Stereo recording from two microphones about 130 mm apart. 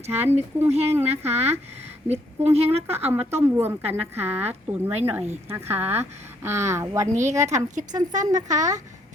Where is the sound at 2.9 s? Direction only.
15° right (ahead or behind).